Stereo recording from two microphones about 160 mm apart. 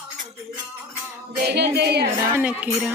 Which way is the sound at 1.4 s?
90° right.